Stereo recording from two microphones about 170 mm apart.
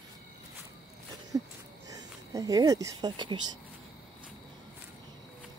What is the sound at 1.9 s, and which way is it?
Speech, 20° right (ahead or behind).